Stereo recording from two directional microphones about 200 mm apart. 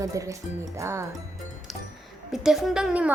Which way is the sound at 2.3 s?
Centre (ahead or behind).